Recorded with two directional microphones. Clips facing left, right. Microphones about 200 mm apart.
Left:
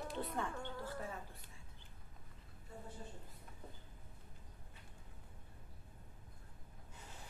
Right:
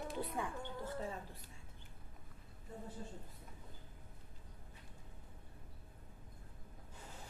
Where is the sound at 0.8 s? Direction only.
20° right (ahead or behind).